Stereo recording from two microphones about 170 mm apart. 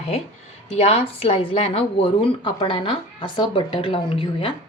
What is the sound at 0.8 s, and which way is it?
Speech, 35° left (ahead or behind).